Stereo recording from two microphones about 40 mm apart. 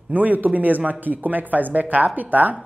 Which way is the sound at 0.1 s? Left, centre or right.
Right.